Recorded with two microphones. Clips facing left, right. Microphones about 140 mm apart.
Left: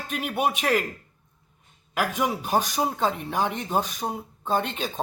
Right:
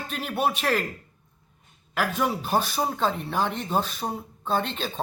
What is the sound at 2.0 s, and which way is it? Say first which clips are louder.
Speech: even; 15° left (ahead or behind).